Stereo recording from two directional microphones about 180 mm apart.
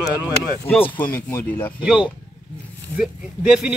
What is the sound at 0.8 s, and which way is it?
Speech, 10° left (ahead or behind).